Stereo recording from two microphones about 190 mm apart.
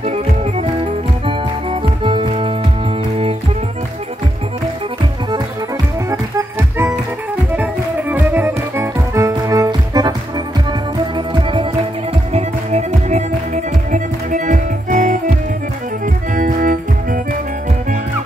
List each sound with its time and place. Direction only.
0.0 s music: 35° right (ahead or behind)
6.0 s music: 15° right (ahead or behind)
8.1 s music: 10° right (ahead or behind)
12.3 s music: 35° right (ahead or behind)
16.3 s music: 45° right (ahead or behind)